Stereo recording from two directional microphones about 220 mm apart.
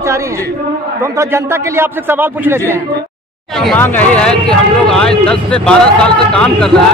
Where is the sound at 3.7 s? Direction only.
5° left (ahead or behind).